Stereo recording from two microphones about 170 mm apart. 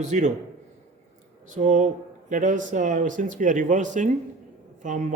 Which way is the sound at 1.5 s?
45° right (ahead or behind).